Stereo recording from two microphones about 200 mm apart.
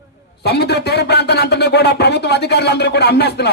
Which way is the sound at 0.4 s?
55° left (ahead or behind).